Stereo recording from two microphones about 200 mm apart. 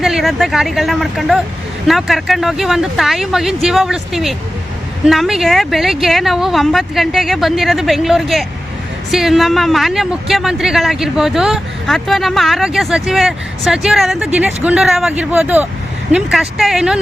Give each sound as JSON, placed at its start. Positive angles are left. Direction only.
{"t": 0.0, "sound": "speech", "side_deg": 0}